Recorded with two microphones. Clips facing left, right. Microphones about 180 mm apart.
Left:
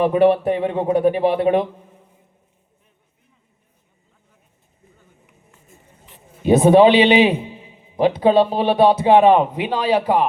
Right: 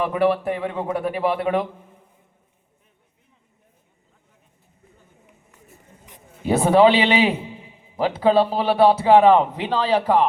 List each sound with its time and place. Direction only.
0.0 s speech: 25° left (ahead or behind)
6.4 s speech: 20° left (ahead or behind)